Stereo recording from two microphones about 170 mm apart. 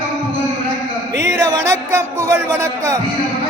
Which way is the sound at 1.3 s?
20° right (ahead or behind).